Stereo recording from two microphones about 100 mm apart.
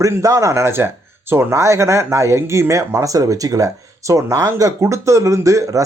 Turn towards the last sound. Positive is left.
turn(degrees=-35)  # may be behind; listen again after turning